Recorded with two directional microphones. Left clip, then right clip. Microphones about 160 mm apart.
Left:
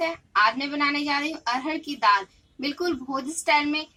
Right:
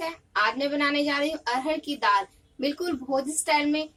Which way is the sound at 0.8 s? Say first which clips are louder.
Left 1 dB; 30° left (ahead or behind).